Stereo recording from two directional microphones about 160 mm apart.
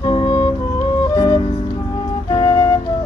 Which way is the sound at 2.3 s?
30° left (ahead or behind).